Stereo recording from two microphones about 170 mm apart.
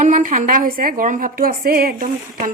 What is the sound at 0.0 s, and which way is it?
A woman's voice, 50° right (ahead or behind).